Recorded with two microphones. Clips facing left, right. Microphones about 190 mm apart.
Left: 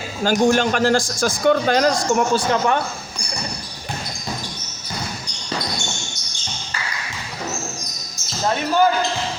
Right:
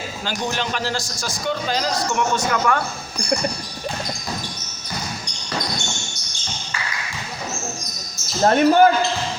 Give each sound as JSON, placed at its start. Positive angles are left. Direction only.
{"t": 0.2, "sound": "a man's voice", "side_deg": 50}
{"t": 2.1, "sound": "speech", "side_deg": 30}
{"t": 8.4, "sound": "speech", "side_deg": -55}